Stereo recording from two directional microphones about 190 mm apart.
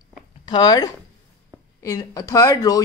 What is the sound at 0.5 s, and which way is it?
Speech, 20° left (ahead or behind).